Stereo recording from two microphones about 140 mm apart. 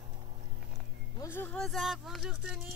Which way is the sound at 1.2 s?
15° left (ahead or behind).